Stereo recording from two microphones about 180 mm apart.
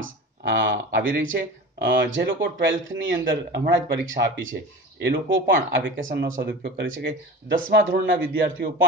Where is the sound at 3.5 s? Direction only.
80° right.